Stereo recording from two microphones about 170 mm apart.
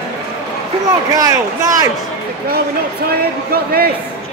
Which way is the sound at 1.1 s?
20° right (ahead or behind).